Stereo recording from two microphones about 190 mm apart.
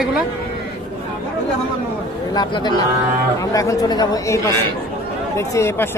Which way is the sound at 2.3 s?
20° left (ahead or behind).